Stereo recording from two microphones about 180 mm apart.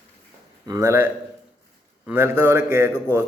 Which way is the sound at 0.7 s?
15° right (ahead or behind).